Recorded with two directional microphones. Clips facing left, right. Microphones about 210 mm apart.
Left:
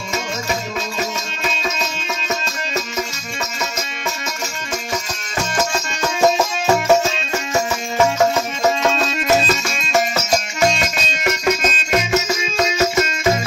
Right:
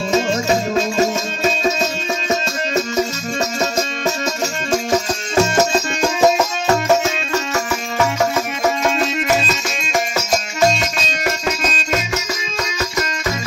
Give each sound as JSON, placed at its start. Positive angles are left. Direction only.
{"t": 0.1, "sound": "music", "side_deg": -30}
{"t": 5.7, "sound": "music", "side_deg": -15}
{"t": 8.9, "sound": "music", "side_deg": -15}